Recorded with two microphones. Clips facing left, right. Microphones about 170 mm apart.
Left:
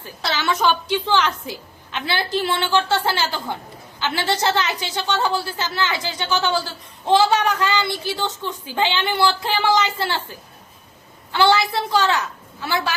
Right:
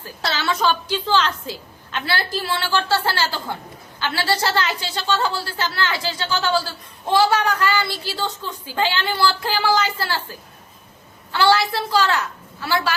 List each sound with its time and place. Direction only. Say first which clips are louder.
0.0 s a woman's voice: left 1 dB; 15° left (ahead or behind)